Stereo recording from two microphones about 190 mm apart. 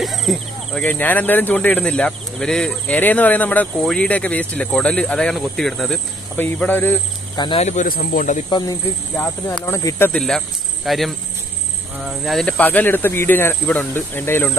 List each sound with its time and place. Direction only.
0.0 s speech: centre (ahead or behind)
7.3 s speech: 25° left (ahead or behind)
7.6 s speech: 45° left (ahead or behind)
8.5 s speech: 20° left (ahead or behind)